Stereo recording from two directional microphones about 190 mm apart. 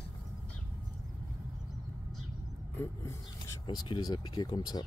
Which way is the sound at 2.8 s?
15° left (ahead or behind).